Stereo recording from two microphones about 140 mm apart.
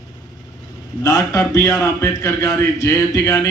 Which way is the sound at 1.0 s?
25° left (ahead or behind).